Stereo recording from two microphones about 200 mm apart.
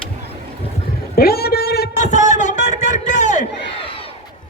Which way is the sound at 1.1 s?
50° left (ahead or behind).